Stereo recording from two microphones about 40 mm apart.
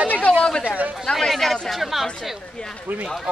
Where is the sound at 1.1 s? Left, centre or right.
Centre.